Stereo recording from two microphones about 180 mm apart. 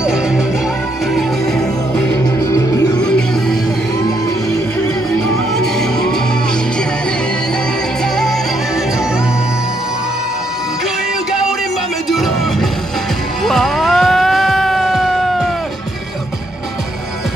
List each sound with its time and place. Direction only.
2.5 s music: 20° left (ahead or behind)
3.0 s music: 5° left (ahead or behind)
12.1 s music: centre (ahead or behind)